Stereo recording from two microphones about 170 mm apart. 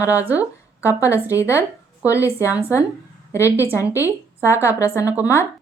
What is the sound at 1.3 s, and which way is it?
Speech, 15° left (ahead or behind).